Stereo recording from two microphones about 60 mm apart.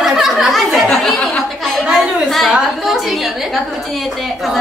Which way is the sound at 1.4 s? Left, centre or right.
Centre.